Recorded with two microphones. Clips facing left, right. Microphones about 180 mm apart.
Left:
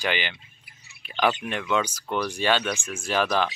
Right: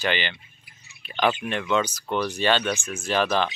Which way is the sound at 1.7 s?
10° left (ahead or behind).